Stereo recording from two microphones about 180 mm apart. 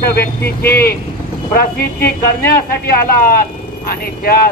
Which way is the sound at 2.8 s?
55° left (ahead or behind).